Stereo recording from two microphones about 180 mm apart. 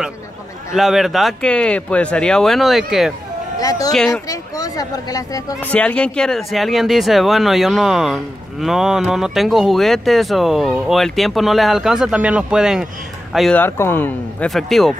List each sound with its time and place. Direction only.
0.7 s speech: centre (ahead or behind)
3.5 s speech: 20° left (ahead or behind)
5.7 s a man's voice: 5° left (ahead or behind)
13.6 s speech: 15° left (ahead or behind)
14.5 s speech: centre (ahead or behind)